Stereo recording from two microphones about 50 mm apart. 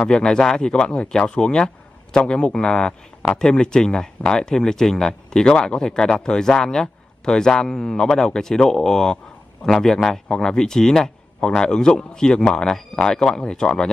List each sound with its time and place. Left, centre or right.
0.0 s speech: centre